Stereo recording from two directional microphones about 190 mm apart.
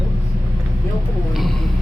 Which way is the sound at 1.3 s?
Centre (ahead or behind).